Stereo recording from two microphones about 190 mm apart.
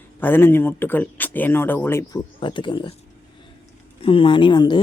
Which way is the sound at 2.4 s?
25° left (ahead or behind).